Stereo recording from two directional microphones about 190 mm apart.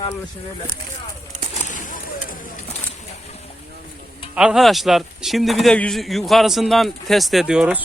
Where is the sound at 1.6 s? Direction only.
45° left (ahead or behind).